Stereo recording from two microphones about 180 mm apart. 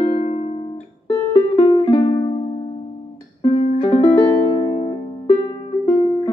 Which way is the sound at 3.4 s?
35° left (ahead or behind).